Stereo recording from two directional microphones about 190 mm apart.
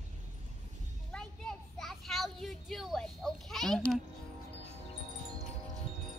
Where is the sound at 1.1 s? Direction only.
5° left (ahead or behind).